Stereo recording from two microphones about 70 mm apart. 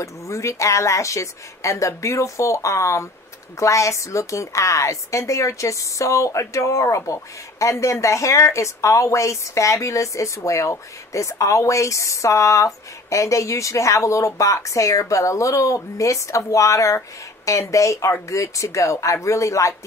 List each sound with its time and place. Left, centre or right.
0.0 s a woman's voice: left